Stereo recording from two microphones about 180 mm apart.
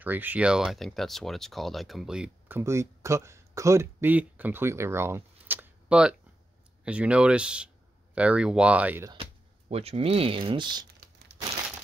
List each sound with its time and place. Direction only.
0.0 s speech: 10° right (ahead or behind)
9.7 s speech: 35° right (ahead or behind)